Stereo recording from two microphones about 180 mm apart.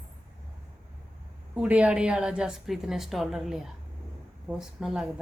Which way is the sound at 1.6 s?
5° right (ahead or behind).